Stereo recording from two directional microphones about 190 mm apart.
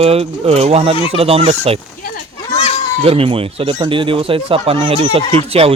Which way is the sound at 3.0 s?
30° right (ahead or behind).